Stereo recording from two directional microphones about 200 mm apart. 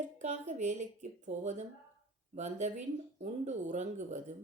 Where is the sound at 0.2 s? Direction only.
35° right (ahead or behind).